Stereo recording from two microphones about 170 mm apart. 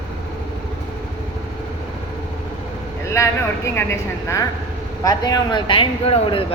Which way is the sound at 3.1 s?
15° left (ahead or behind).